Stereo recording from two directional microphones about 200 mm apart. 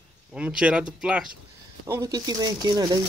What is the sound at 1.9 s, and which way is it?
Speech, 15° right (ahead or behind).